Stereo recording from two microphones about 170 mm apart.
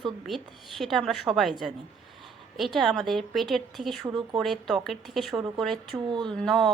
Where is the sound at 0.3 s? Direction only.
Centre (ahead or behind).